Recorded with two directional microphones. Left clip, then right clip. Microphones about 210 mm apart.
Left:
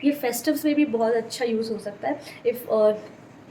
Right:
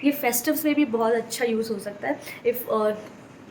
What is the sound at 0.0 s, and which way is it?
A woman's voice, 20° right (ahead or behind).